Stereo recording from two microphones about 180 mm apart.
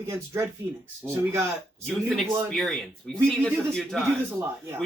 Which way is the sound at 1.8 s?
Centre (ahead or behind).